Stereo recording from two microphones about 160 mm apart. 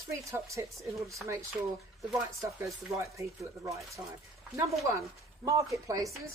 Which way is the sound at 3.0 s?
20° right (ahead or behind).